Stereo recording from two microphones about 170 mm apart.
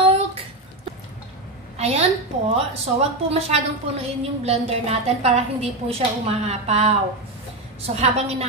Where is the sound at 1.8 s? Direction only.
40° right (ahead or behind).